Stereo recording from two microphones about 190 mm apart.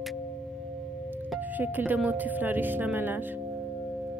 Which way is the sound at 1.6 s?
10° right (ahead or behind).